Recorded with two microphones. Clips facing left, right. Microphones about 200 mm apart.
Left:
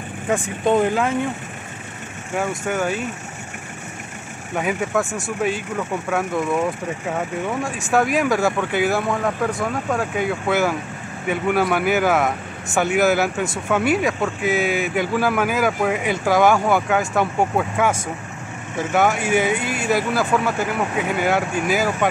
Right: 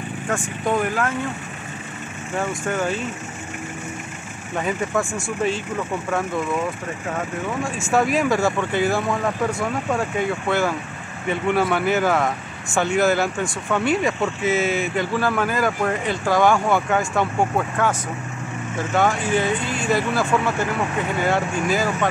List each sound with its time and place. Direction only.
0.7 s speech: 25° left (ahead or behind)
2.3 s speech: 5° left (ahead or behind)
4.6 s speech: 5° left (ahead or behind)
7.9 s speech: centre (ahead or behind)
18.9 s speech: 10° left (ahead or behind)